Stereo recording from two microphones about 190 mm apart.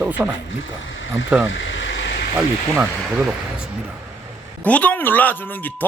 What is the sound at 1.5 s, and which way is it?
Vehicle, 80° left.